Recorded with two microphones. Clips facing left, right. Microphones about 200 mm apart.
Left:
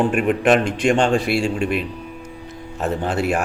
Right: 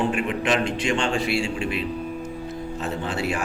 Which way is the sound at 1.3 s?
55° left (ahead or behind).